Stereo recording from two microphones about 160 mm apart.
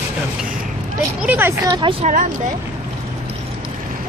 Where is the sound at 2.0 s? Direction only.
55° right (ahead or behind).